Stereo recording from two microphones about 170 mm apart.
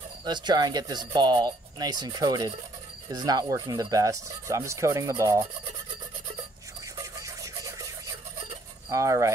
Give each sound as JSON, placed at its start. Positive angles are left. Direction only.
{"t": 0.2, "sound": "speech", "side_deg": -25}
{"t": 7.0, "sound": "music", "side_deg": -20}
{"t": 8.9, "sound": "speech", "side_deg": -20}